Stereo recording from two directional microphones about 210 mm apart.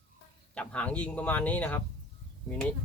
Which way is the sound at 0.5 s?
5° left (ahead or behind).